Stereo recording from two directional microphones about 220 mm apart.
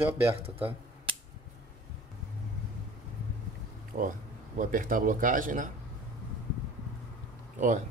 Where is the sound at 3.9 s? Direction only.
40° right (ahead or behind).